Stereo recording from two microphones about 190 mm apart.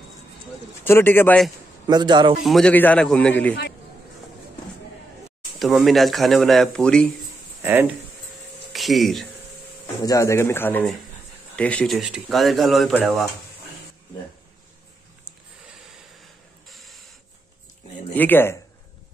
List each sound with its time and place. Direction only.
0.8 s a man's voice: 10° left (ahead or behind)
1.9 s a man's voice: 20° right (ahead or behind)
2.4 s a man's voice: 5° left (ahead or behind)
5.6 s speech: centre (ahead or behind)
7.6 s speech: 10° right (ahead or behind)
8.7 s speech: centre (ahead or behind)
10.0 s a man's voice: 15° left (ahead or behind)
16.6 s printer: centre (ahead or behind)
18.1 s a man's voice: 10° left (ahead or behind)